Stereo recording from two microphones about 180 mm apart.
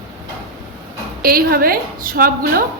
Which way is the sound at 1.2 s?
55° right (ahead or behind).